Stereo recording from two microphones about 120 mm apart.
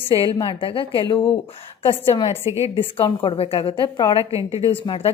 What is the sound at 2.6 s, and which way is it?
A woman's voice, 45° left (ahead or behind).